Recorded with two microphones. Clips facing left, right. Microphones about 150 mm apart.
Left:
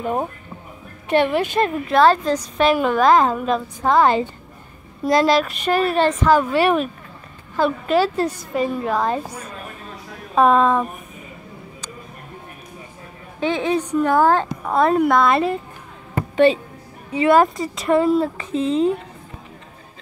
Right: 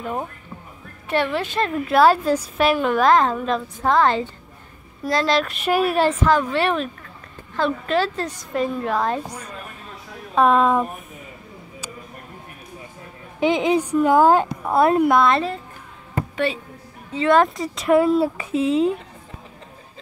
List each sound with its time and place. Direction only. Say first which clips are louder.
0.0 s a woman's voice: left 5 dB; 25° left (ahead or behind)
1.9 s a woman's voice: right 1 dB; 5° right (ahead or behind)
6.3 s a woman's voice: left 4 dB; 10° left (ahead or behind)
13.4 s a woman's voice: right 2 dB; 15° right (ahead or behind)
15.3 s a woman's voice: left 3 dB; 15° left (ahead or behind)
17.1 s speech: left 2 dB; 10° left (ahead or behind)